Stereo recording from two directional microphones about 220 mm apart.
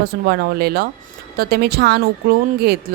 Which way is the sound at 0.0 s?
45° right (ahead or behind).